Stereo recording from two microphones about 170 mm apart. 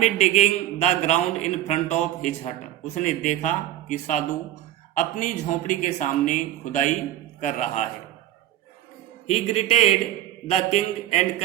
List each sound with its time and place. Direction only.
0.0 s a man's voice: 40° left (ahead or behind)
9.3 s a man's voice: 40° left (ahead or behind)